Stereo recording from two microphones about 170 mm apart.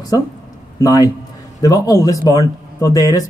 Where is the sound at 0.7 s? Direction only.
20° left (ahead or behind).